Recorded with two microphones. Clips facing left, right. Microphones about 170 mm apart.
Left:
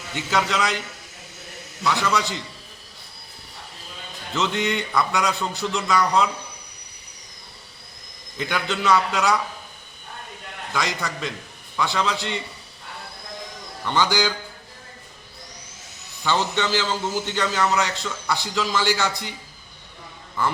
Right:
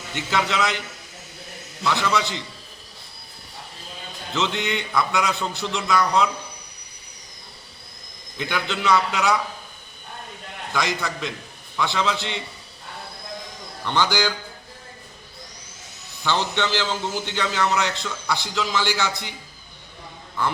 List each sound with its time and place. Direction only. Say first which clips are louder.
0.1 s a man's voice: left 1 dB; centre (ahead or behind)
1.8 s a man's voice: even; centre (ahead or behind)
4.4 s a man's voice: left 1 dB; centre (ahead or behind)
8.4 s a man's voice: left 1 dB; centre (ahead or behind)
10.7 s a man's voice: right 1 dB; centre (ahead or behind)
13.8 s a man's voice: left 1 dB; centre (ahead or behind)
16.2 s a man's voice: left 1 dB; 5° left (ahead or behind)